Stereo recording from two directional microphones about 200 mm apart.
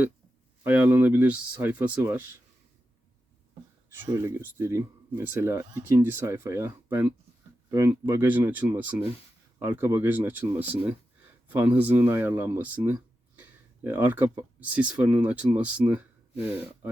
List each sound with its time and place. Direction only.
0.6 s speech: 10° right (ahead or behind)
3.9 s speech: 10° right (ahead or behind)